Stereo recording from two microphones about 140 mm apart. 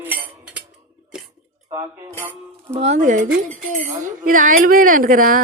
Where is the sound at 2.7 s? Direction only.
50° right (ahead or behind); by 5.4 s 75° right (ahead or behind).